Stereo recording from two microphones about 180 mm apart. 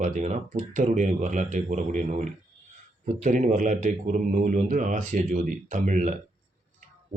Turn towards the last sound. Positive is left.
turn(degrees=-45)  # may be behind; listen again after turning